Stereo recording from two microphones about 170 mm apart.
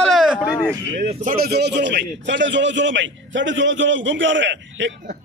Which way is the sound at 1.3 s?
70° right (ahead or behind).